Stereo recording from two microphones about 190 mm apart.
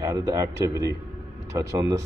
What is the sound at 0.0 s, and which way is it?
Speech, 15° right (ahead or behind).